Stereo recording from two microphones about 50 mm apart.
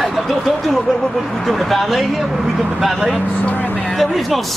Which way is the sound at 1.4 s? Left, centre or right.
Centre.